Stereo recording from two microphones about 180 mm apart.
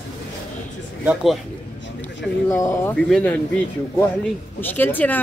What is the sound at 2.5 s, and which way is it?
Speech, 15° left (ahead or behind).